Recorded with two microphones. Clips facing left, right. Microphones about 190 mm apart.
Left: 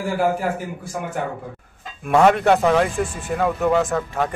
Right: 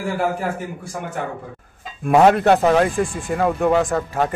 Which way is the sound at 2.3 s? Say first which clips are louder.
Right 2 dB; centre (ahead or behind).